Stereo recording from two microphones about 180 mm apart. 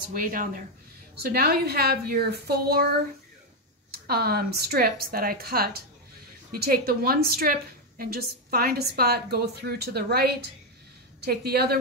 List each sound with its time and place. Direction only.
0.0 s a woman's voice: 50° right (ahead or behind)
3.9 s a woman's voice: 60° right (ahead or behind)